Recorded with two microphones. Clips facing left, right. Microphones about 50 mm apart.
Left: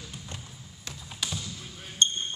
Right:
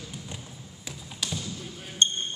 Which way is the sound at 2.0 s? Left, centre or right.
Right.